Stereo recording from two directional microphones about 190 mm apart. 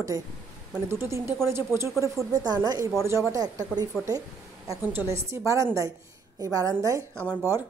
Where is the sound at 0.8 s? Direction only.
15° right (ahead or behind).